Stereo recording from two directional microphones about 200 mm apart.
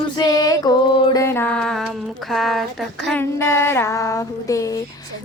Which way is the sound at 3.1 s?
10° left (ahead or behind).